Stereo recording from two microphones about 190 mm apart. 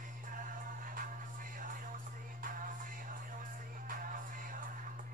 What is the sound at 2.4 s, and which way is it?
Music, 45° right (ahead or behind).